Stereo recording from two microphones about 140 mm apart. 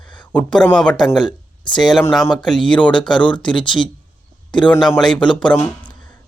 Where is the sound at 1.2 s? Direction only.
35° left (ahead or behind).